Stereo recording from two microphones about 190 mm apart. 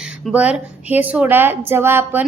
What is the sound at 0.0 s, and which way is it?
A woman's voice, 5° right (ahead or behind).